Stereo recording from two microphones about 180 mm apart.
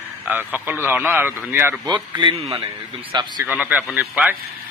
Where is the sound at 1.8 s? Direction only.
25° right (ahead or behind).